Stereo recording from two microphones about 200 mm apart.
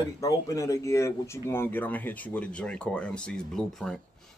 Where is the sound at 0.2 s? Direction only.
15° left (ahead or behind).